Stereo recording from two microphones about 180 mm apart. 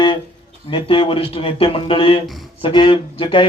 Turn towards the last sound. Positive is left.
turn(degrees=30)  # may be behind; listen again after turning